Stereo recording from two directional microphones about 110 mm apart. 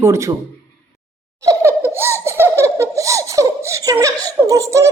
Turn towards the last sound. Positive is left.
turn(degrees=-30)  # may be behind; listen again after turning